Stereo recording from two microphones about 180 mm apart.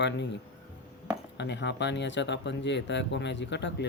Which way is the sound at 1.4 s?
75° left (ahead or behind).